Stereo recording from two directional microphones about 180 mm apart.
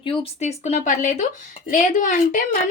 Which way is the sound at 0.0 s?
30° left (ahead or behind).